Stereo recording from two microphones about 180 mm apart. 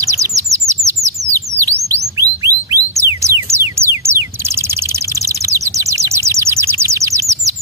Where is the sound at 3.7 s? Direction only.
15° right (ahead or behind).